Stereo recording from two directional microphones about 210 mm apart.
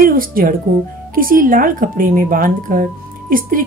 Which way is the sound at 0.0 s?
40° right (ahead or behind).